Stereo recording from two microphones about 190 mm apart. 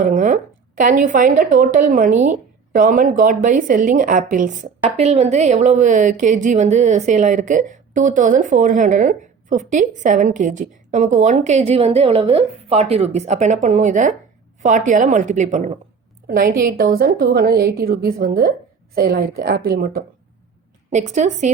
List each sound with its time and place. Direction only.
0.0 s a sound: 45° right (ahead or behind)
0.8 s a woman's voice: 45° right (ahead or behind)
16.2 s a woman's voice: 50° right (ahead or behind)
20.9 s a woman's voice: 40° right (ahead or behind)